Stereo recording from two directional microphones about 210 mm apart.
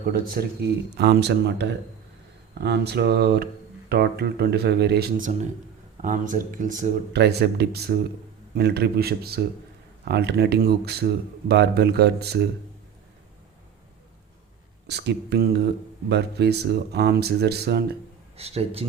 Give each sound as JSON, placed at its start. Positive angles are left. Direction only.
{"t": 0.1, "sound": "speech", "side_deg": -45}
{"t": 2.6, "sound": "speech", "side_deg": -50}
{"t": 14.8, "sound": "speech", "side_deg": -55}
{"t": 18.3, "sound": "speech", "side_deg": -30}